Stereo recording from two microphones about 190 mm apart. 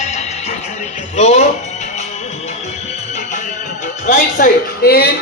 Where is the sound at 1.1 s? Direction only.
35° left (ahead or behind).